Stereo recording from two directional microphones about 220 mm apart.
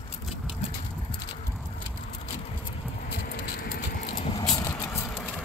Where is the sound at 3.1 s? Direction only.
45° left (ahead or behind).